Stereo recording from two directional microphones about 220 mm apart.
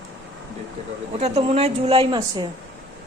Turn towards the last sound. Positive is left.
turn(degrees=-20)  # may be behind; listen again after turning